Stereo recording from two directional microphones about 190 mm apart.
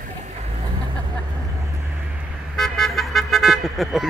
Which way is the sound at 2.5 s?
Centre (ahead or behind).